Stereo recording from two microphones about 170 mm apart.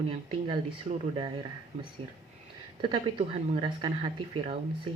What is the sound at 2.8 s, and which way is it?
Speech, 30° right (ahead or behind).